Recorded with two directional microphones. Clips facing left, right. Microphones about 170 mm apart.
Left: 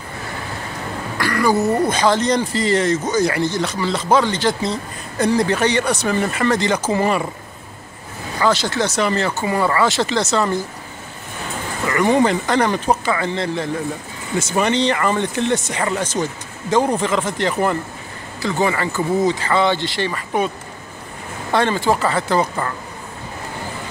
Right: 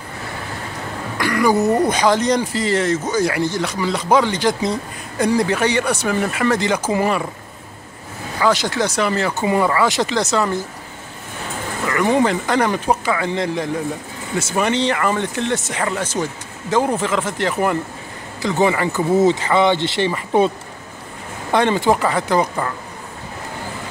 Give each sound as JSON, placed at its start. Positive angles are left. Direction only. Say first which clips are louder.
{"t": 1.1, "sound": "speech", "louder": "right 1 dB", "side_deg": -15}
{"t": 8.4, "sound": "speech", "louder": "even", "side_deg": -10}
{"t": 9.4, "sound": "speech", "louder": "right 2 dB", "side_deg": -20}
{"t": 11.9, "sound": "speech", "louder": "left 1 dB", "side_deg": 0}
{"t": 18.4, "sound": "speech", "louder": "right 2 dB", "side_deg": -20}